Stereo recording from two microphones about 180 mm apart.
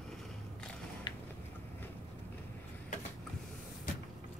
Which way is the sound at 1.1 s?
25° left (ahead or behind).